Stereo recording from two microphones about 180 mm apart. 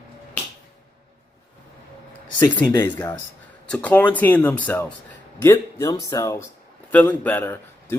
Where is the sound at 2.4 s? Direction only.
10° left (ahead or behind).